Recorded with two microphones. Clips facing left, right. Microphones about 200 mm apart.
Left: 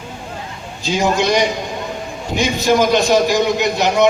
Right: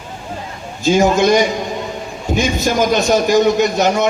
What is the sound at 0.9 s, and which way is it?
A man's voice, 50° right (ahead or behind).